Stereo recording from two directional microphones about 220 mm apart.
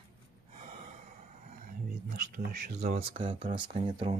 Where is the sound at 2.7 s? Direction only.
30° right (ahead or behind).